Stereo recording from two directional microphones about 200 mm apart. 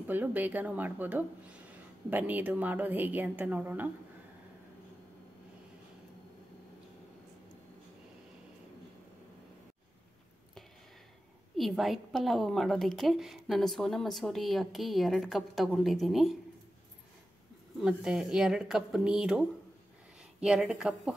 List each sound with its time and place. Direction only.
0.0 s a woman's voice: 10° right (ahead or behind)
11.5 s a woman's voice: centre (ahead or behind)
17.7 s a woman's voice: 5° right (ahead or behind)